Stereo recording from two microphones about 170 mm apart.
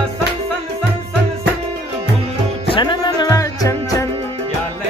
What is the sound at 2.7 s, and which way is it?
Music, 30° left (ahead or behind).